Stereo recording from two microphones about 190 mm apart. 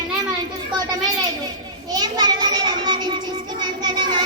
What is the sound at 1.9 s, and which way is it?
Music, 20° right (ahead or behind).